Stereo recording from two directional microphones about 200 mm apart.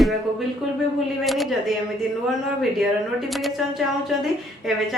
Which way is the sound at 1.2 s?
Centre (ahead or behind).